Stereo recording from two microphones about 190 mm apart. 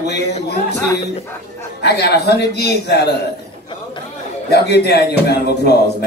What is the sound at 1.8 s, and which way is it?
A woman's voice, 60° left (ahead or behind).